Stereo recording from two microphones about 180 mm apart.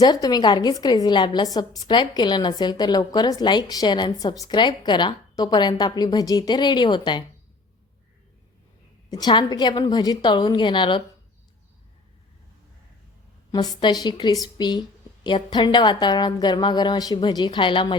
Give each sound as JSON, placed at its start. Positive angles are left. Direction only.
{"t": 0.0, "sound": "a woman's voice", "side_deg": 20}
{"t": 9.0, "sound": "a woman's voice", "side_deg": 25}
{"t": 13.5, "sound": "a woman's voice", "side_deg": 20}